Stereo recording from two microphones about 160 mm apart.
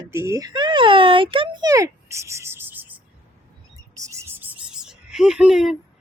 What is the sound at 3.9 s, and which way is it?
Bird, 20° right (ahead or behind).